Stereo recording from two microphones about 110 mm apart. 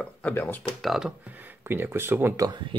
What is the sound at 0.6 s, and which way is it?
Speech, centre (ahead or behind).